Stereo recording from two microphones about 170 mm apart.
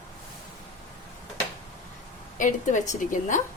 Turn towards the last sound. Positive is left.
turn(degrees=45)  # may be behind; listen again after turning